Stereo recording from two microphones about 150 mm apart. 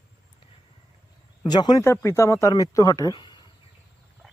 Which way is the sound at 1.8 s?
15° left (ahead or behind).